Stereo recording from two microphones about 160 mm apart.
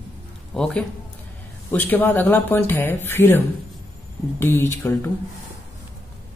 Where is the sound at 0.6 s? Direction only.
5° left (ahead or behind).